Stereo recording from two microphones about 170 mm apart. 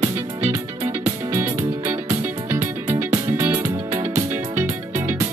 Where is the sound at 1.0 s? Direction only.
15° right (ahead or behind).